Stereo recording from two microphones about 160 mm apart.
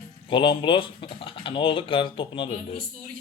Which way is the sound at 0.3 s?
30° left (ahead or behind).